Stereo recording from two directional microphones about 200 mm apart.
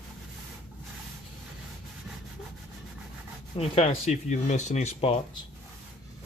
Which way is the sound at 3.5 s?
30° left (ahead or behind).